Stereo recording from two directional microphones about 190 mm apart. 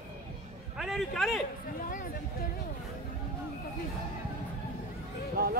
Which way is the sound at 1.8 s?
45° left (ahead or behind).